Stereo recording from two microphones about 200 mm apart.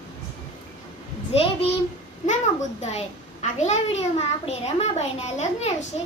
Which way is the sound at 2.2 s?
35° left (ahead or behind).